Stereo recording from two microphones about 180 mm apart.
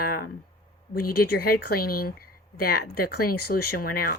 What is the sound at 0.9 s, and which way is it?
Speech, 55° left (ahead or behind).